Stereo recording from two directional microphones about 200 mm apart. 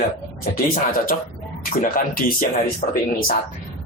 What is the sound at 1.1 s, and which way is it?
Speech, 40° left (ahead or behind).